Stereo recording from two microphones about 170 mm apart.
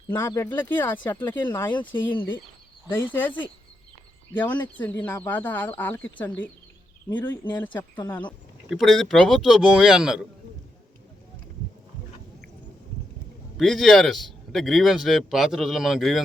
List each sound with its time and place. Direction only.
0.2 s speech: 15° left (ahead or behind)
7.3 s speech: 25° left (ahead or behind)
8.7 s a man's voice: centre (ahead or behind)
13.6 s a man's voice: centre (ahead or behind)